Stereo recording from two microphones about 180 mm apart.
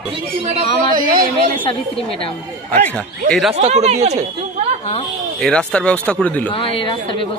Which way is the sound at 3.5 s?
40° right (ahead or behind).